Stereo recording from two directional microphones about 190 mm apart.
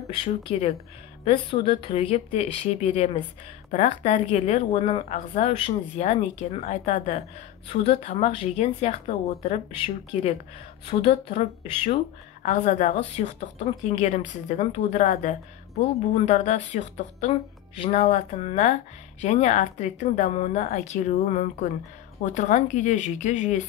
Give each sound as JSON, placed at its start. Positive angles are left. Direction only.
{"t": 0.2, "sound": "speech", "side_deg": 30}
{"t": 10.9, "sound": "speech", "side_deg": 30}
{"t": 12.4, "sound": "speech", "side_deg": 40}